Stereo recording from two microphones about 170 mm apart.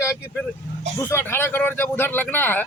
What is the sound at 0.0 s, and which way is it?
Speech, 15° left (ahead or behind).